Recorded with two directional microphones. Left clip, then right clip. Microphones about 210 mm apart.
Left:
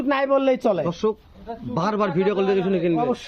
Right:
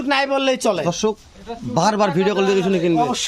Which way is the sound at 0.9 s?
55° right (ahead or behind).